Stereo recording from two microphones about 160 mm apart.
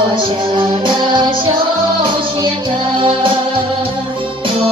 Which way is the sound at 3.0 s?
30° right (ahead or behind).